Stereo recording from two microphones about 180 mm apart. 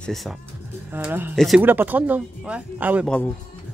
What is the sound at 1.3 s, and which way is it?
Speech, centre (ahead or behind).